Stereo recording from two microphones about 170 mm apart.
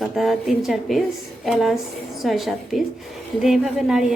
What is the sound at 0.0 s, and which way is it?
Speech, centre (ahead or behind).